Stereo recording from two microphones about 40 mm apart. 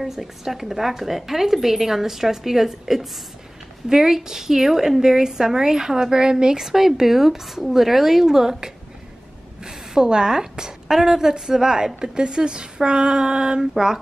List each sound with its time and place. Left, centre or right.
0.0 s a woman's voice: centre